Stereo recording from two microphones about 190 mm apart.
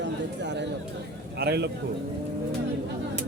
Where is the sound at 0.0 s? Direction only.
65° right (ahead or behind).